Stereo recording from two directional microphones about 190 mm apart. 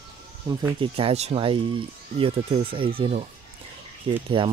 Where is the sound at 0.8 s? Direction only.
30° right (ahead or behind).